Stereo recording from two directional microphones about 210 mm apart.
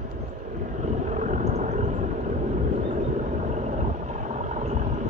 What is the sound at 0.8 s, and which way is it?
Vehicle, 35° right (ahead or behind).